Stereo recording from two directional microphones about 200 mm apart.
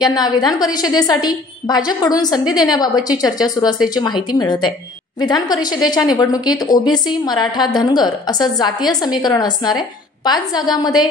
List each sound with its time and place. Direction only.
0.0 s a woman's voice: 20° left (ahead or behind)